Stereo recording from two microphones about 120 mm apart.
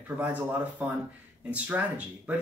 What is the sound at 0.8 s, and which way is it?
Speech, 10° right (ahead or behind).